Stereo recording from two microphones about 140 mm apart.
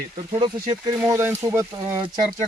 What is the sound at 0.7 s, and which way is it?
Speech, 25° right (ahead or behind).